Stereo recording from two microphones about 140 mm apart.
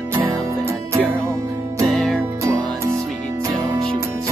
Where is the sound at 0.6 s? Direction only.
20° right (ahead or behind).